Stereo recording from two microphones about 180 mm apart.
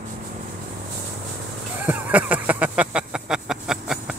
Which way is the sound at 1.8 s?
10° right (ahead or behind).